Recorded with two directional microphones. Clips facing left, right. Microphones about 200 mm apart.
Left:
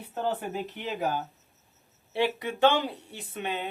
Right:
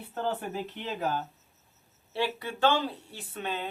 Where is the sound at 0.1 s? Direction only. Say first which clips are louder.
Left 2 dB; 15° left (ahead or behind).